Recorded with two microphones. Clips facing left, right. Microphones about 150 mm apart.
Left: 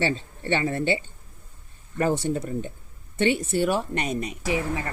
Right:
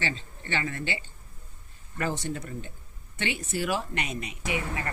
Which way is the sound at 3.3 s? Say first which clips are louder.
Left 6 dB; 70° left (ahead or behind).